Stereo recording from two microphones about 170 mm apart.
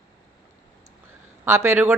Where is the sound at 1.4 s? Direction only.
15° right (ahead or behind).